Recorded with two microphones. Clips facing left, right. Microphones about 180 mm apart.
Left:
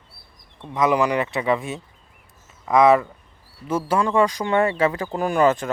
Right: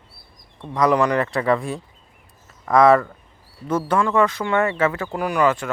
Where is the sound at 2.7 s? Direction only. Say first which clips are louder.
Right 1 dB; 15° left (ahead or behind).